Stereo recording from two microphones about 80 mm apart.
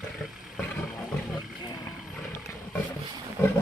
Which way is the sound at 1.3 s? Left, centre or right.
Left.